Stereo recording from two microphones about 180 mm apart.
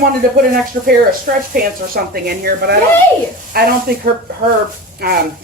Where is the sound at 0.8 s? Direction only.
55° right (ahead or behind).